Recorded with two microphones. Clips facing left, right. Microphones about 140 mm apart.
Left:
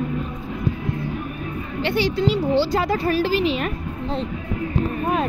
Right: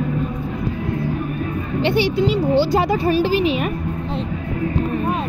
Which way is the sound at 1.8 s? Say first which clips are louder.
Right 3 dB; 20° right (ahead or behind).